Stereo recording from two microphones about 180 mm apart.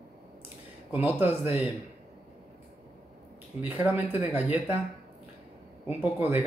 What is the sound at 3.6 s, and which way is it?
Speech, 10° right (ahead or behind).